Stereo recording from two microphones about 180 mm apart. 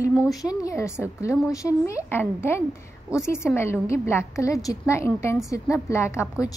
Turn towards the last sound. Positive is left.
turn(degrees=15)  # may be behind; listen again after turning